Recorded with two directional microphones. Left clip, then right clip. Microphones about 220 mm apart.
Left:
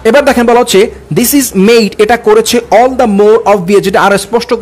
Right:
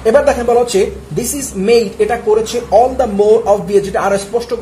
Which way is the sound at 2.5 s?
50° left (ahead or behind).